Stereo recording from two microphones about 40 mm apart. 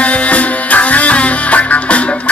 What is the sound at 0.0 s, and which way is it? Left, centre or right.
Music, left.